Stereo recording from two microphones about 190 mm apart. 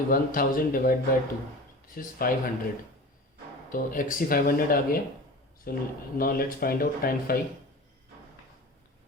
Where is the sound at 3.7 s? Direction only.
45° left (ahead or behind).